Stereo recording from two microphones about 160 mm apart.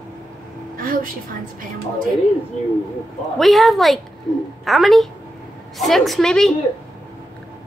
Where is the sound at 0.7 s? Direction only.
60° right (ahead or behind).